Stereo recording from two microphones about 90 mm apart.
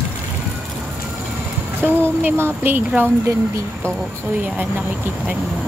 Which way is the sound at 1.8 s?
20° right (ahead or behind).